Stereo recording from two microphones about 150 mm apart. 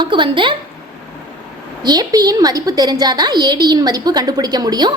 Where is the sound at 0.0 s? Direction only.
35° right (ahead or behind).